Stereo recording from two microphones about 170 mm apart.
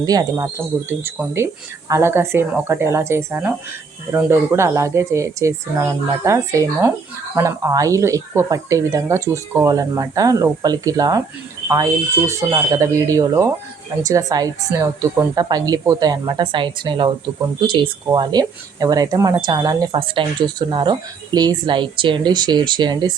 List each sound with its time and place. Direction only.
0.0 s speech: 20° right (ahead or behind)